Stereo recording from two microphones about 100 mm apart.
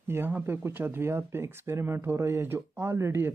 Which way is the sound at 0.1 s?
25° right (ahead or behind).